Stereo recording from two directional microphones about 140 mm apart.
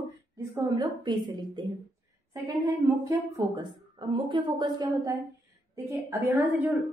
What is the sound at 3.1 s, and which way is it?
A woman's voice, 25° right (ahead or behind).